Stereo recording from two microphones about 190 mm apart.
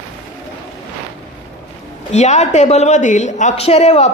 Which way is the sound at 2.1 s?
35° left (ahead or behind).